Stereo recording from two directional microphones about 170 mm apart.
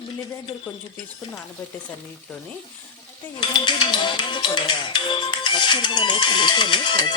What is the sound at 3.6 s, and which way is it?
Speech, 25° left (ahead or behind).